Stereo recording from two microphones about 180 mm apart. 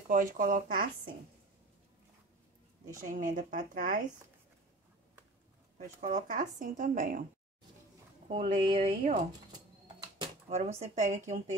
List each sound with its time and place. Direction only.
0.1 s speech: 45° right (ahead or behind)
3.1 s speech: 45° right (ahead or behind)
5.8 s speech: 45° right (ahead or behind)
8.3 s speech: 35° right (ahead or behind)
10.5 s speech: 40° right (ahead or behind)